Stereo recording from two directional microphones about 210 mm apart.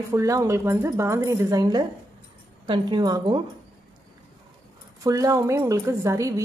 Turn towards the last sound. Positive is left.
turn(degrees=-15)  # may be behind; listen again after turning